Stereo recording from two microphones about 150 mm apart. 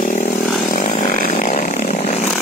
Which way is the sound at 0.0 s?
55° left (ahead or behind).